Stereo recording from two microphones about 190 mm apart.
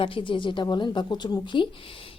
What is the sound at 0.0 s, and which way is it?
A woman's voice, 25° left (ahead or behind).